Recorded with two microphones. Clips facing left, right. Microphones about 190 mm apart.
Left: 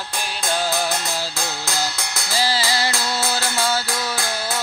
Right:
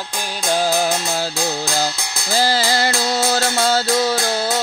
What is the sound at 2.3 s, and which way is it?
Music, 50° right (ahead or behind).